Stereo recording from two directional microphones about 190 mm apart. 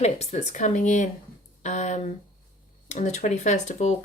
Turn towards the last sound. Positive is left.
turn(degrees=40)  # may be behind; listen again after turning